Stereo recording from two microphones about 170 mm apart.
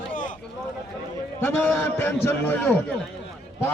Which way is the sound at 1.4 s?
10° left (ahead or behind).